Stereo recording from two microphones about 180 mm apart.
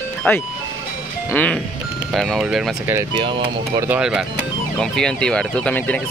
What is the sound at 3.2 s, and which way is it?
Speech, 25° right (ahead or behind).